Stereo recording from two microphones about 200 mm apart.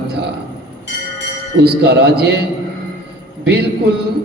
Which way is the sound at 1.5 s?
55° right (ahead or behind).